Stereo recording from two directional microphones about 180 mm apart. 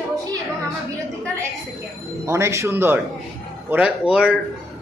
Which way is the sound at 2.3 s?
15° right (ahead or behind).